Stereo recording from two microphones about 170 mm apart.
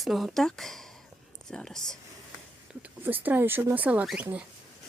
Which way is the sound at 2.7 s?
10° right (ahead or behind).